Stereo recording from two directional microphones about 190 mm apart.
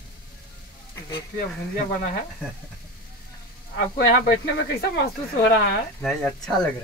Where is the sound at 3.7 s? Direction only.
50° left (ahead or behind).